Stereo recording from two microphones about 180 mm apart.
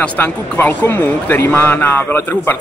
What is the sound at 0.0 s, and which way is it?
Speech, 10° left (ahead or behind).